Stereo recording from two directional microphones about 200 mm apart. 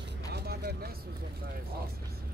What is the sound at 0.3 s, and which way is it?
Vehicle, 55° right (ahead or behind).